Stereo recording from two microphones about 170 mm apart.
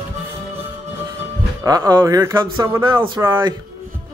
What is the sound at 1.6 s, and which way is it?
Speech, 20° right (ahead or behind).